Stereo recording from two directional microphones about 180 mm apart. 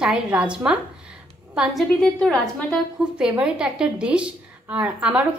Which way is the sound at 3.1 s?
5° right (ahead or behind).